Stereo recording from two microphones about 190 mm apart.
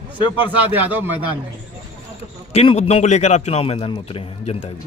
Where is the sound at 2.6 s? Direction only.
30° left (ahead or behind).